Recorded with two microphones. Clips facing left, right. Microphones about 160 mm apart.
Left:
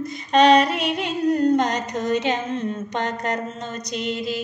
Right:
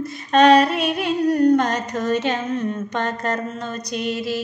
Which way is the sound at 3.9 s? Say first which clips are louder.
Right 2 dB; 20° left (ahead or behind).